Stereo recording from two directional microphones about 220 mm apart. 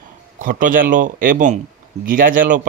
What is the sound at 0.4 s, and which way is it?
Speech, 35° right (ahead or behind).